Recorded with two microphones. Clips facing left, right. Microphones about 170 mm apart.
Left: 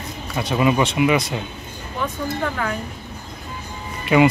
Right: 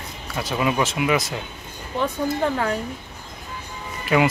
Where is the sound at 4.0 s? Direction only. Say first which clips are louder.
Left 4 dB; centre (ahead or behind).